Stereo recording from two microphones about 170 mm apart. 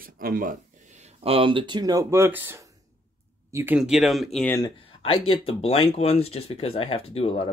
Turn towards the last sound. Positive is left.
turn(degrees=35)  # may be behind; listen again after turning